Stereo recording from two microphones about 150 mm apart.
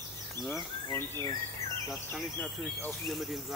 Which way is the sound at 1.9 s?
5° left (ahead or behind).